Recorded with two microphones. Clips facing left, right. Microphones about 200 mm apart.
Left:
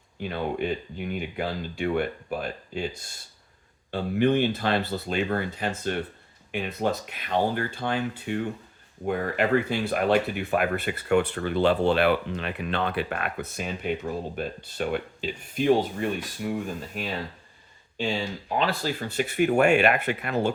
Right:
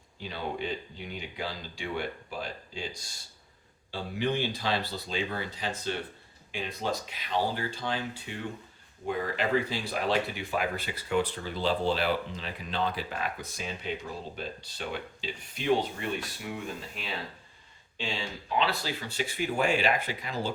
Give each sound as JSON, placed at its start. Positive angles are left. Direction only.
{"t": 0.2, "sound": "speech", "side_deg": 55}
{"t": 3.9, "sound": "speech", "side_deg": 55}